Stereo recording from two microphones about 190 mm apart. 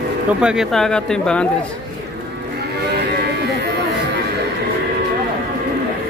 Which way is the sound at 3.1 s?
60° right (ahead or behind).